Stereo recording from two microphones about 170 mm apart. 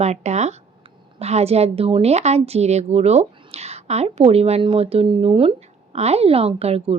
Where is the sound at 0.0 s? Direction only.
40° right (ahead or behind).